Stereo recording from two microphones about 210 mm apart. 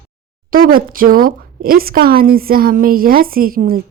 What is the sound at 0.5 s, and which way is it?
A woman's voice, 40° right (ahead or behind).